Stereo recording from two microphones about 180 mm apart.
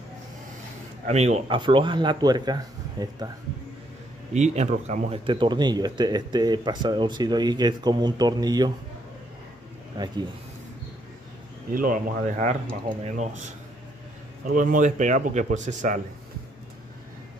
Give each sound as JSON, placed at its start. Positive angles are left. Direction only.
{"t": 1.0, "sound": "speech", "side_deg": -35}
{"t": 4.3, "sound": "speech", "side_deg": -40}
{"t": 9.9, "sound": "speech", "side_deg": -25}
{"t": 11.7, "sound": "speech", "side_deg": -50}
{"t": 14.5, "sound": "speech", "side_deg": -50}